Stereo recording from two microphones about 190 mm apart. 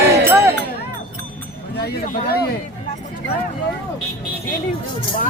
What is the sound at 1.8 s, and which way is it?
Speech, 55° left (ahead or behind).